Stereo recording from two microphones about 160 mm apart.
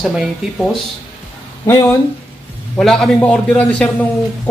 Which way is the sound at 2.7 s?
5° left (ahead or behind).